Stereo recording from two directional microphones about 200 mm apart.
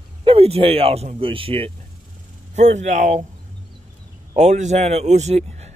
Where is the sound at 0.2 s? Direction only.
25° right (ahead or behind).